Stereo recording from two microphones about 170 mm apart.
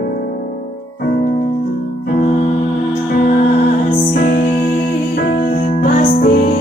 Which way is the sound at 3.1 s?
60° left (ahead or behind).